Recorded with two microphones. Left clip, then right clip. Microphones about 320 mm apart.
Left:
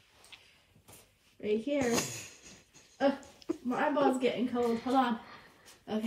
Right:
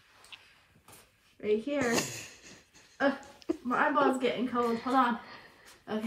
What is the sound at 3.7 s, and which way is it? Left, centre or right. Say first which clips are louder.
Speech: right 2 dB; centre.